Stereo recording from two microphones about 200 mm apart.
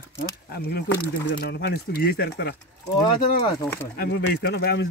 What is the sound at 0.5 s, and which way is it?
A man's voice, 55° left (ahead or behind).